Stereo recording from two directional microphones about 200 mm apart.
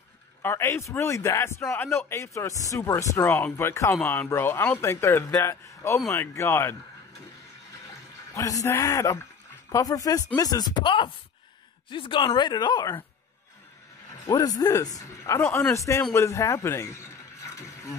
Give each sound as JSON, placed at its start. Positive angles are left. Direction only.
{"t": 0.4, "sound": "speech", "side_deg": 15}
{"t": 8.4, "sound": "speech", "side_deg": 15}
{"t": 14.2, "sound": "speech", "side_deg": 15}